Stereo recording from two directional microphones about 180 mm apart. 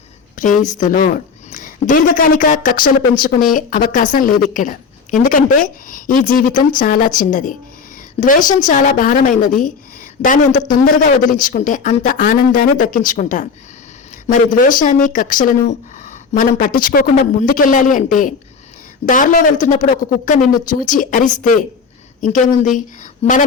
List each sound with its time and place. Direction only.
0.3 s speech: 45° left (ahead or behind)
23.2 s a woman's voice: 35° left (ahead or behind)